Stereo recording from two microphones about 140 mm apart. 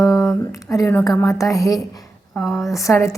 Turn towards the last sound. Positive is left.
turn(degrees=20)  # may be behind; listen again after turning